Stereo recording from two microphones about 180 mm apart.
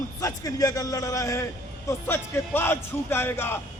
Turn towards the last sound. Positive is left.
turn(degrees=15)  # may be behind; listen again after turning